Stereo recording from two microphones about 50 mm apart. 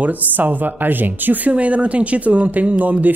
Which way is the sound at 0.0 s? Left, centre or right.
Right.